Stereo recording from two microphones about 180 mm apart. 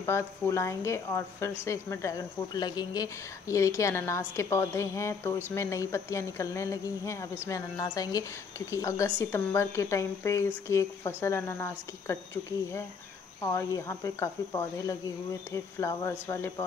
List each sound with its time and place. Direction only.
0.0 s speech: 15° left (ahead or behind)
13.4 s speech: 20° left (ahead or behind)